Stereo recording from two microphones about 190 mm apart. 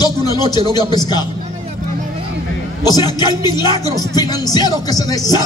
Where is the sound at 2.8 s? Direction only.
20° left (ahead or behind).